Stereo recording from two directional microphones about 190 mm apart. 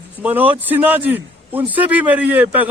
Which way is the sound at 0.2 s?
10° right (ahead or behind).